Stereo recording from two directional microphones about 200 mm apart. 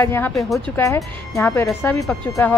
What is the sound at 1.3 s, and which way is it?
Speech, 15° left (ahead or behind).